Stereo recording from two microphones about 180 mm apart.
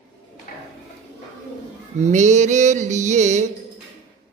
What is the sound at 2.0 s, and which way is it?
A man's voice, 40° right (ahead or behind).